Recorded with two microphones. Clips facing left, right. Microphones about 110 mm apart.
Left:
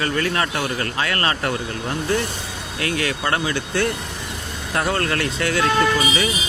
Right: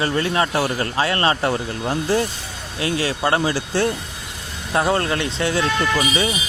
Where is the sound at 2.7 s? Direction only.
25° right (ahead or behind).